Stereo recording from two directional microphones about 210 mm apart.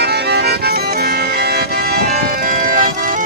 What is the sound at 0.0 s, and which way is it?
Music, 50° right (ahead or behind).